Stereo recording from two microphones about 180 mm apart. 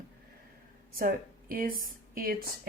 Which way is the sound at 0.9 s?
50° right (ahead or behind).